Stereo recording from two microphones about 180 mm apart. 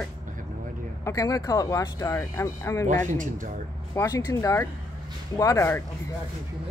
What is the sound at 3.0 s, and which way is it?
Speech, 45° right (ahead or behind).